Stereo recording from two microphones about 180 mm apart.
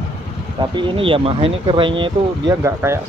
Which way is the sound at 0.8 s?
30° right (ahead or behind).